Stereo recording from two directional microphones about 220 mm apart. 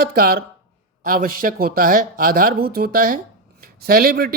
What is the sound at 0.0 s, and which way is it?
Speech, 45° right (ahead or behind).